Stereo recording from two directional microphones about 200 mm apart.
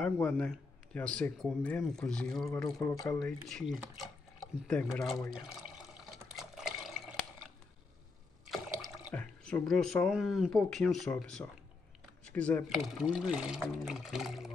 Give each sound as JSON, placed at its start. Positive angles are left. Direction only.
{"t": 0.2, "sound": "a man's voice", "side_deg": 10}
{"t": 3.3, "sound": "speech", "side_deg": 5}
{"t": 6.3, "sound": "water", "side_deg": 0}
{"t": 8.5, "sound": "speech", "side_deg": 0}